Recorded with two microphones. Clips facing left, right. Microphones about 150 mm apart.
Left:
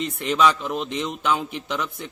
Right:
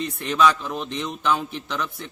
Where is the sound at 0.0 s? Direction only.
15° left (ahead or behind).